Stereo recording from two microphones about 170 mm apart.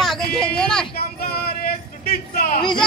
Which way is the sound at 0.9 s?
65° left (ahead or behind).